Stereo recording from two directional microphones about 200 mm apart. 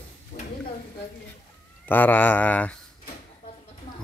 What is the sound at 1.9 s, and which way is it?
Speech, 10° left (ahead or behind).